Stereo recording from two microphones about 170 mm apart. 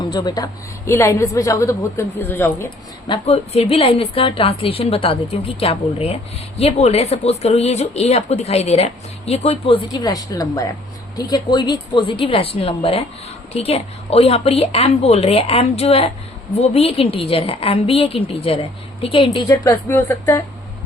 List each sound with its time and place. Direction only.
0.0 s a woman's voice: 25° left (ahead or behind)
2.6 s a woman's voice: 30° left (ahead or behind); by 20.4 s 15° left (ahead or behind)